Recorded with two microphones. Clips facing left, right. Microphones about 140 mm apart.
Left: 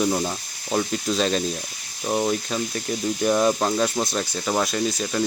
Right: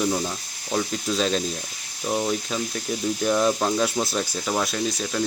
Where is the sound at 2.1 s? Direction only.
15° left (ahead or behind).